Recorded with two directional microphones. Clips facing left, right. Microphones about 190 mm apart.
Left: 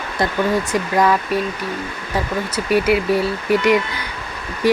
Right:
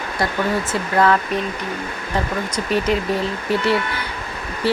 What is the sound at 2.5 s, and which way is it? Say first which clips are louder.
Speech: left 4 dB; 10° left (ahead or behind).